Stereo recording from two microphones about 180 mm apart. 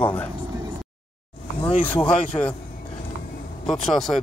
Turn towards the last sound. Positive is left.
turn(degrees=0)  # may be behind; listen again after turning